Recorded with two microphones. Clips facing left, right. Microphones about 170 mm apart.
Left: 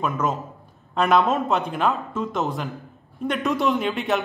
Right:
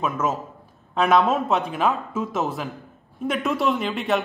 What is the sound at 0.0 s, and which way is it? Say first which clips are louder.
A man's voice: even; centre (ahead or behind).